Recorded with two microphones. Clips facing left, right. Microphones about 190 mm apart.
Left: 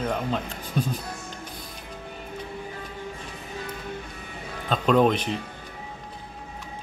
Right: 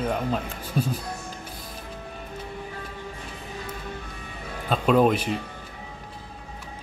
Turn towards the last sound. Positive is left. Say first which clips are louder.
# right 1 dB
turn(degrees=-5)  # may be behind; listen again after turning